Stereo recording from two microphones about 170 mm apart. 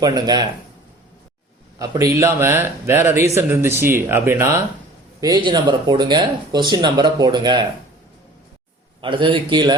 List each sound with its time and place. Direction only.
0.0 s speech: 25° right (ahead or behind)
1.8 s a man's voice: 20° right (ahead or behind)
5.2 s speech: 25° right (ahead or behind)
9.0 s speech: 30° right (ahead or behind)